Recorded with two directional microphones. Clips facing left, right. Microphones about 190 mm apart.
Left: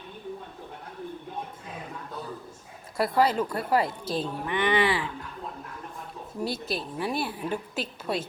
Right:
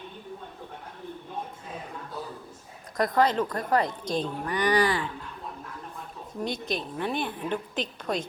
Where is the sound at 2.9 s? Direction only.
10° left (ahead or behind).